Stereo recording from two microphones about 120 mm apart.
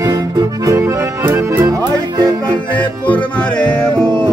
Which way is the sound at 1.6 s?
30° right (ahead or behind).